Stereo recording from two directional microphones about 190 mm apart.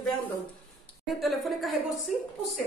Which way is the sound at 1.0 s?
Centre (ahead or behind).